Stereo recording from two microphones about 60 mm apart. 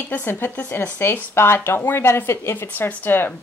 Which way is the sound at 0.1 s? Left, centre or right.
Left.